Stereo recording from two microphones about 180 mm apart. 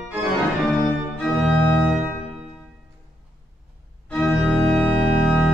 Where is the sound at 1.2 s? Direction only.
Centre (ahead or behind).